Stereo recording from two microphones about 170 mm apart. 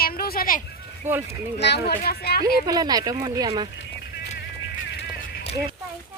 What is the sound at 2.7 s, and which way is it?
Speech, 25° right (ahead or behind).